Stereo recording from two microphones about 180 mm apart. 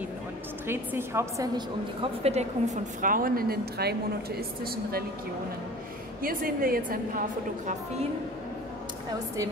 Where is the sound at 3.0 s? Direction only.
50° right (ahead or behind).